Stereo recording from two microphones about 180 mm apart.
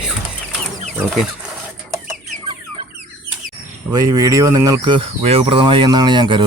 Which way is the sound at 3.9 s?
20° right (ahead or behind).